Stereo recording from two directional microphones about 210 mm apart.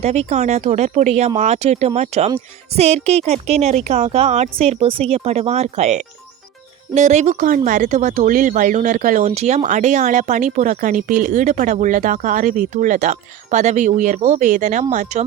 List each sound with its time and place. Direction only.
0.0 s speech: 30° right (ahead or behind)